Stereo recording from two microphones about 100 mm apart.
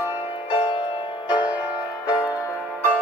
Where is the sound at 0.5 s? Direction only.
50° left (ahead or behind).